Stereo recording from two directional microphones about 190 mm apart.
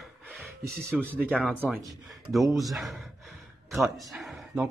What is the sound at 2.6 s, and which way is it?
Speech, centre (ahead or behind).